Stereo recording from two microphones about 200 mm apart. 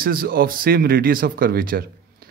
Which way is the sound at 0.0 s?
45° right (ahead or behind).